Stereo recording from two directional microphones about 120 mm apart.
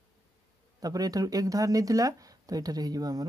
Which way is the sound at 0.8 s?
30° right (ahead or behind).